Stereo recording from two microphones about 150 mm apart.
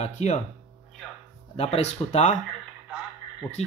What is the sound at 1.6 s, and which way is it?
Speech, 45° left (ahead or behind).